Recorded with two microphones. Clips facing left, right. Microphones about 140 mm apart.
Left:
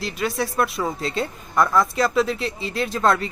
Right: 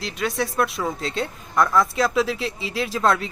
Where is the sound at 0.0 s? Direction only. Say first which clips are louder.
Left 1 dB; centre (ahead or behind).